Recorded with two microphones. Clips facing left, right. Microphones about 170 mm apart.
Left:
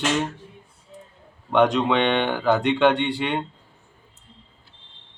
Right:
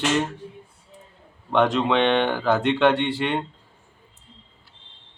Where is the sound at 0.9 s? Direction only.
Centre (ahead or behind).